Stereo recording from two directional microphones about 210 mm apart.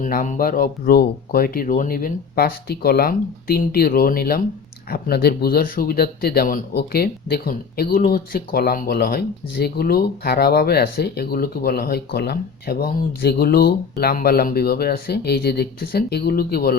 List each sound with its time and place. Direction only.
0.0 s speech: 40° left (ahead or behind)